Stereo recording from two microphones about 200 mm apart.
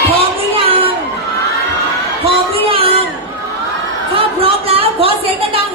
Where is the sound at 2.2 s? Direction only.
30° right (ahead or behind).